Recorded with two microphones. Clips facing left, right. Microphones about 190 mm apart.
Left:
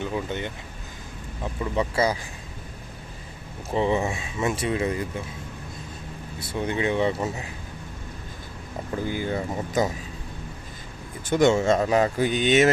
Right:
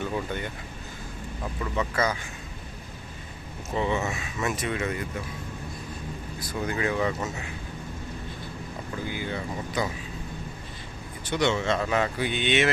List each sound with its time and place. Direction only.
0.0 s speech: 20° left (ahead or behind)
1.6 s speech: 30° left (ahead or behind)
3.7 s speech: 30° left (ahead or behind)
6.4 s speech: 25° left (ahead or behind)
9.0 s speech: 45° left (ahead or behind)
11.3 s speech: 45° left (ahead or behind)